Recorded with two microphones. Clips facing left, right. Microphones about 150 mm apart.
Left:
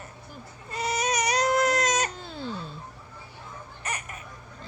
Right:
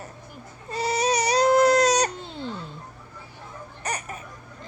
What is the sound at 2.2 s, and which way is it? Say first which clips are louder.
Music: right 2 dB; 20° right (ahead or behind).